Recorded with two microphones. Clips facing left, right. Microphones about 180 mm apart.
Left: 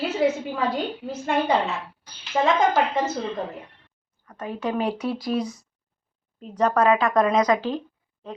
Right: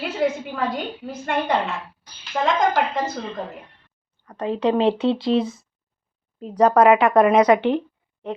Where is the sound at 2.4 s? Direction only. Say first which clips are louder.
Left 1 dB; 10° left (ahead or behind).